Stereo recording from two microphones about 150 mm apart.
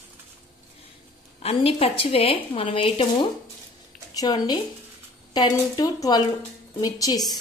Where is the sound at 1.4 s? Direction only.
40° left (ahead or behind).